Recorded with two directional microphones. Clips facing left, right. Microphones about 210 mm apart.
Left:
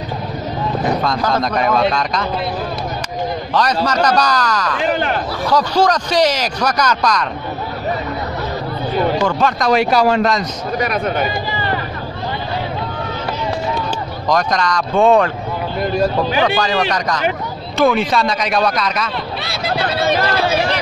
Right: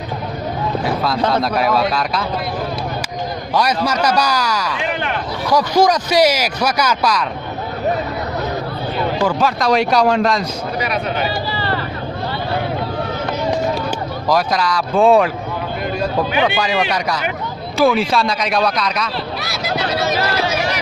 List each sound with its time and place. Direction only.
0.8 s a sound: 5° right (ahead or behind)
1.3 s speech: 5° right (ahead or behind)
3.5 s speech: 10° right (ahead or behind)
4.8 s speech: 40° left (ahead or behind)
5.5 s speech: 10° right (ahead or behind)
9.2 s speech: centre (ahead or behind)
10.8 s speech: 45° left (ahead or behind)
11.5 s vehicle: 15° left (ahead or behind)
14.3 s speech: 5° right (ahead or behind)
15.8 s speech: 45° left (ahead or behind)
16.4 s speech: 10° right (ahead or behind)
19.4 s speech: 30° left (ahead or behind)